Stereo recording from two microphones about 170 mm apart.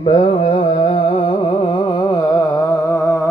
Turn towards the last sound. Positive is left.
turn(degrees=10)  # may be behind; listen again after turning